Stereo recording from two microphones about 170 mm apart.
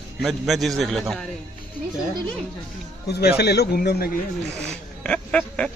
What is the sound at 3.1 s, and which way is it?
Speech, 70° left (ahead or behind).